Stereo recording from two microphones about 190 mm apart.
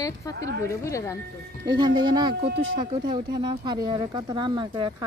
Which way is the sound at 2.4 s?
60° right (ahead or behind).